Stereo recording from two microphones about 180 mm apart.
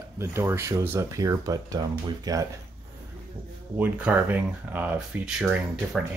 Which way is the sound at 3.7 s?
10° right (ahead or behind).